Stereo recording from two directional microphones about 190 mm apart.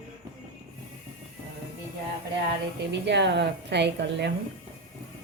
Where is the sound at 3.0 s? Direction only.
65° right (ahead or behind).